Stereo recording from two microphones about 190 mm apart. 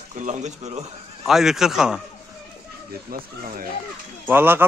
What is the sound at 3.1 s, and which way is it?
Speech, 50° right (ahead or behind).